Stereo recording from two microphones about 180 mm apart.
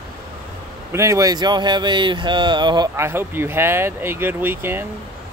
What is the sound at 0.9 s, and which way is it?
Speech, 15° right (ahead or behind).